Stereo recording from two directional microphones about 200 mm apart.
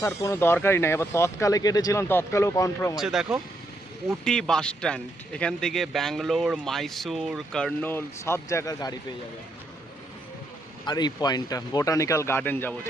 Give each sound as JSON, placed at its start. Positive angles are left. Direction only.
{"t": 0.2, "sound": "speech", "side_deg": 15}
{"t": 2.9, "sound": "speech", "side_deg": 0}
{"t": 10.8, "sound": "speech", "side_deg": 20}